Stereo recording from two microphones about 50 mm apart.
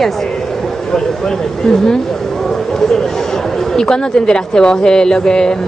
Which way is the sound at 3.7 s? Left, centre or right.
Centre.